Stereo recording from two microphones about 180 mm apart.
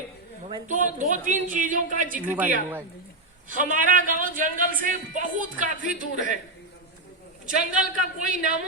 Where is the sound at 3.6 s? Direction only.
50° right (ahead or behind).